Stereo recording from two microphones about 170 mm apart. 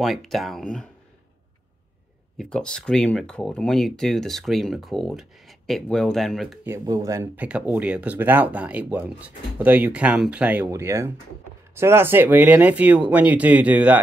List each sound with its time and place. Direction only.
0.0 s speech: centre (ahead or behind)
2.3 s speech: 5° left (ahead or behind)
6.6 s speech: 15° right (ahead or behind)
7.4 s speech: 10° right (ahead or behind)